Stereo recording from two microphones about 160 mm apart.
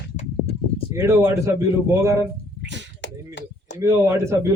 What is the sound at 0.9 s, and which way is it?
A man's voice, 20° right (ahead or behind).